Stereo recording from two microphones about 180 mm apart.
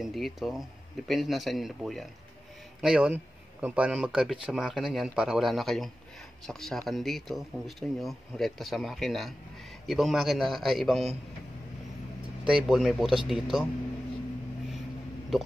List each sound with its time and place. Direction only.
0.0 s speech: centre (ahead or behind)
12.4 s speech: centre (ahead or behind)